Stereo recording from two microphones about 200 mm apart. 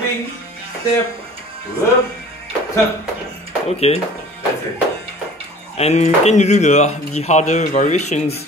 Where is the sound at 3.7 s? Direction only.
30° left (ahead or behind).